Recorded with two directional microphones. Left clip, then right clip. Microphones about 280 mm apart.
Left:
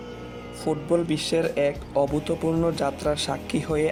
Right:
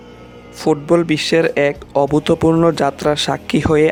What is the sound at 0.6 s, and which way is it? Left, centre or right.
Speech, right.